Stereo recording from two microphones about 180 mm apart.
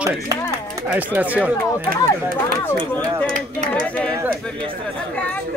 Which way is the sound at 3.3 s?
40° right (ahead or behind).